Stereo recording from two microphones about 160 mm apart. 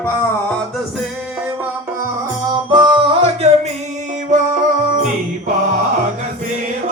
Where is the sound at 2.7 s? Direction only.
30° right (ahead or behind).